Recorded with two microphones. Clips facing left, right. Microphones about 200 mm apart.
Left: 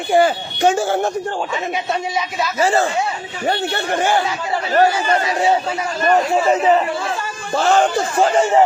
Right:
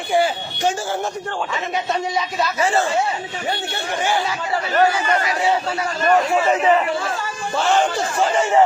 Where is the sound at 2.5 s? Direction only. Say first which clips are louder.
Left 4 dB; 35° left (ahead or behind).